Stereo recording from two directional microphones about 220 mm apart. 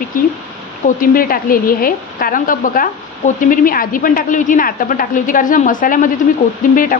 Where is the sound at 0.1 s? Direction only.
40° left (ahead or behind).